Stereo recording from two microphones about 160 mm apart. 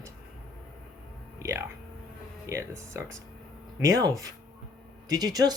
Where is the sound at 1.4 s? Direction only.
15° right (ahead or behind).